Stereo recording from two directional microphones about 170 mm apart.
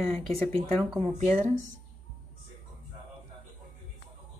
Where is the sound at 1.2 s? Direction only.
40° right (ahead or behind).